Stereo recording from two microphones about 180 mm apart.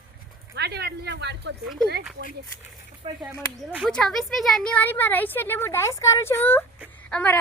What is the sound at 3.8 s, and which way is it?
Speech, 5° left (ahead or behind).